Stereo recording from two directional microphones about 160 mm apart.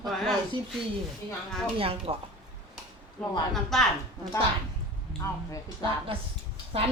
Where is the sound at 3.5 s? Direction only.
Centre (ahead or behind).